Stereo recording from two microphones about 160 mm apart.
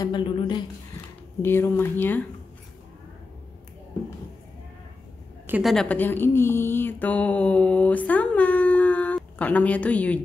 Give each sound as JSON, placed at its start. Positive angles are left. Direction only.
{"t": 0.0, "sound": "a woman's voice", "side_deg": 30}
{"t": 1.4, "sound": "speech", "side_deg": 15}
{"t": 5.6, "sound": "speech", "side_deg": 0}